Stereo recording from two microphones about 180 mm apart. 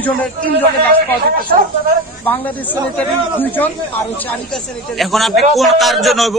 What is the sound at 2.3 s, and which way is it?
A man's voice, 10° left (ahead or behind).